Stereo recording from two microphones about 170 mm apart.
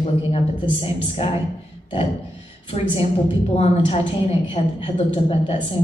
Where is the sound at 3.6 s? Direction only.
35° left (ahead or behind).